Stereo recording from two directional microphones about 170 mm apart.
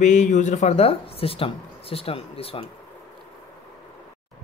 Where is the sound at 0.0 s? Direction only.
45° left (ahead or behind).